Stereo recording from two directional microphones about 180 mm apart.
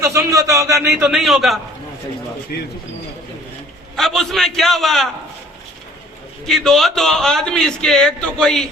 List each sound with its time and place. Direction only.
0.0 s a man's voice: 15° right (ahead or behind)
1.0 s a man's voice: centre (ahead or behind)
2.5 s speech: 55° left (ahead or behind)
3.9 s a man's voice: centre (ahead or behind)
6.4 s a man's voice: centre (ahead or behind)